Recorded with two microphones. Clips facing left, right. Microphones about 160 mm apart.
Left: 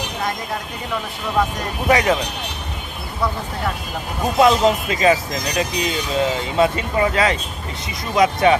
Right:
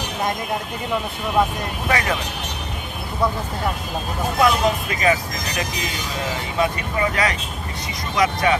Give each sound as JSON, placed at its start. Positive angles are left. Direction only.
{"t": 1.9, "sound": "speech", "side_deg": 20}
{"t": 4.4, "sound": "speech", "side_deg": 25}